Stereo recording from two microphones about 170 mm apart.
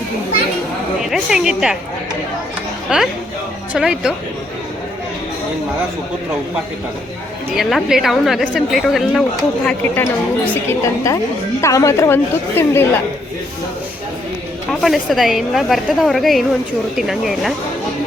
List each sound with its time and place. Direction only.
1.1 s a woman's voice: 5° right (ahead or behind)
2.9 s a woman's voice: 5° right (ahead or behind)
7.5 s a woman's voice: centre (ahead or behind)
9.6 s a woman's voice: 10° left (ahead or behind)
14.7 s a woman's voice: centre (ahead or behind)